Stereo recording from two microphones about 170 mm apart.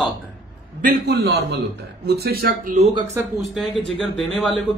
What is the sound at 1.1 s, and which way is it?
A man's voice, 70° right (ahead or behind).